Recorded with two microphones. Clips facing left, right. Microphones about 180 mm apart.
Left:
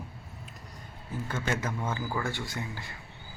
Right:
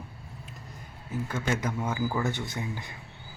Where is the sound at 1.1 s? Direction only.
10° right (ahead or behind).